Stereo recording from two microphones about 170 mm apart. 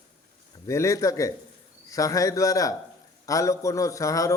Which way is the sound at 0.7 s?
20° left (ahead or behind).